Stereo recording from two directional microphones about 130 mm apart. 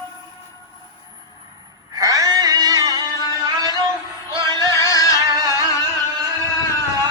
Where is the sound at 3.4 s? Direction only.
30° right (ahead or behind).